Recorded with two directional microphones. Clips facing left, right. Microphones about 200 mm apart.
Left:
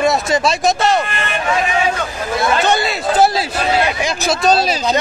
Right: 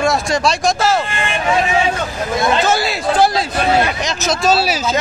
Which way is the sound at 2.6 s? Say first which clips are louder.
Even; centre (ahead or behind).